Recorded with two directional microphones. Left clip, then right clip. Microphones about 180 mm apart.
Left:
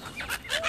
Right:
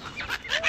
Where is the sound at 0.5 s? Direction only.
25° left (ahead or behind).